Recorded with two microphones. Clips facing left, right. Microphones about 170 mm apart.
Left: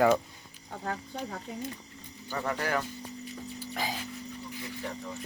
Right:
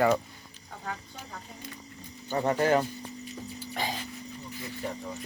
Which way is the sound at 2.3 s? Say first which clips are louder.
Right 7 dB; 25° right (ahead or behind).